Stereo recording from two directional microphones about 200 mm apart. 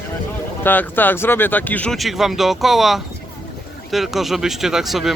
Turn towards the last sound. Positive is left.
turn(degrees=0)  # may be behind; listen again after turning